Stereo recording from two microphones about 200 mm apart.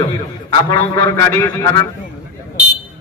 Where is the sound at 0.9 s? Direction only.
15° left (ahead or behind).